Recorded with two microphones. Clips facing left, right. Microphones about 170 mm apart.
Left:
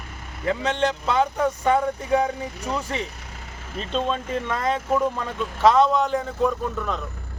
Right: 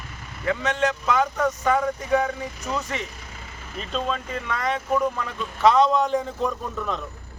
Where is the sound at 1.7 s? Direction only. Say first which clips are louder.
Left 1 dB; 10° left (ahead or behind).